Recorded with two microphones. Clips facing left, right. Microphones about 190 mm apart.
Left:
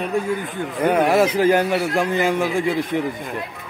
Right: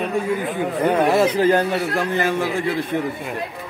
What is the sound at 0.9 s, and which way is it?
A man's voice, 15° left (ahead or behind).